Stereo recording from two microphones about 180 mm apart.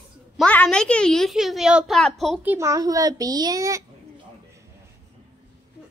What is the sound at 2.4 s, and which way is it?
A child's voice, 15° right (ahead or behind).